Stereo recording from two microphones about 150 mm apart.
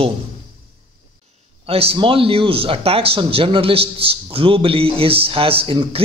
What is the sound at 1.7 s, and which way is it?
Speech, 40° right (ahead or behind).